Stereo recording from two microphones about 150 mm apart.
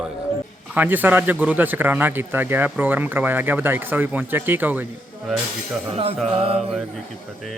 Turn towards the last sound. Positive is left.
turn(degrees=-40)  # may be behind; listen again after turning